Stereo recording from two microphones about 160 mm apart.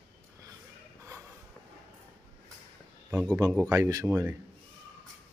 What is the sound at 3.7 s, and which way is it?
Speech, 20° right (ahead or behind).